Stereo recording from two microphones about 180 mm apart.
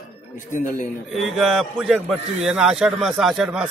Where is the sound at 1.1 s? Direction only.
Centre (ahead or behind).